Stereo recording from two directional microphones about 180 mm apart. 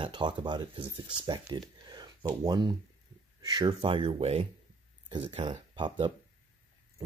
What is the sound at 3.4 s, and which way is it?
Speech, 25° right (ahead or behind).